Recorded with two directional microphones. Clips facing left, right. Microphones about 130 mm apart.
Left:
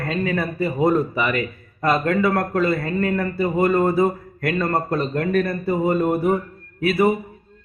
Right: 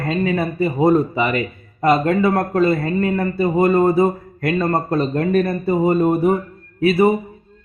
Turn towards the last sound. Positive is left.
turn(degrees=-25)  # may be behind; listen again after turning